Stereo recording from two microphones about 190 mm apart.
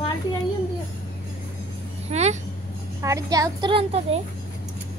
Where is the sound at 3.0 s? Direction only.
15° right (ahead or behind).